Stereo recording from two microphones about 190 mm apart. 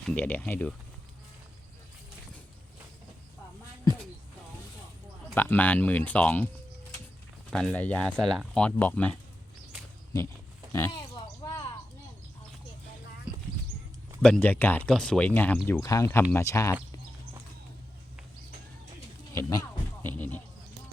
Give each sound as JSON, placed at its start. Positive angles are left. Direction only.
{"t": 0.0, "sound": "speech", "side_deg": 5}
{"t": 5.3, "sound": "speech", "side_deg": 10}
{"t": 7.5, "sound": "speech", "side_deg": 5}
{"t": 10.1, "sound": "speech", "side_deg": 20}
{"t": 14.2, "sound": "speech", "side_deg": 5}
{"t": 19.3, "sound": "speech", "side_deg": 15}